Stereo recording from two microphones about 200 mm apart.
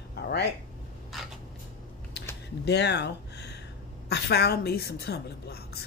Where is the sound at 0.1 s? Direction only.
55° left (ahead or behind).